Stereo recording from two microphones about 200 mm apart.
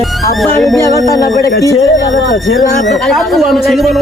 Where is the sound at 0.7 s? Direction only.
15° right (ahead or behind).